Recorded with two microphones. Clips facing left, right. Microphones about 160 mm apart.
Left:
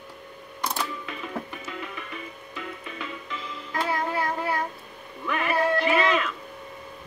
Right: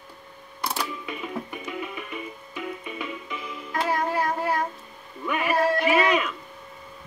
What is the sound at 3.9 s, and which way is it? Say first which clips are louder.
Music: right 3 dB; 40° right (ahead or behind).